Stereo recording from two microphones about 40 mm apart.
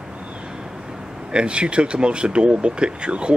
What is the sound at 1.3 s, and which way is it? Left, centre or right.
A man's voice, right.